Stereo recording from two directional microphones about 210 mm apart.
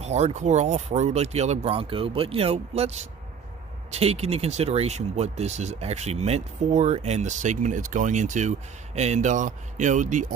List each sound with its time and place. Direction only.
0.0 s speech: 30° right (ahead or behind)